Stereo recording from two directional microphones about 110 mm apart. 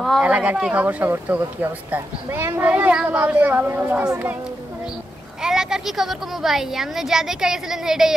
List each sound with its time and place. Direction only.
0.2 s speech: 10° right (ahead or behind)
2.6 s speech: 10° right (ahead or behind)
5.4 s speech: 5° right (ahead or behind)